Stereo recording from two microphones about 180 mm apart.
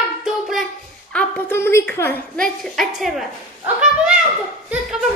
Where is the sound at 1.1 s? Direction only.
10° left (ahead or behind); by 4.2 s 5° right (ahead or behind).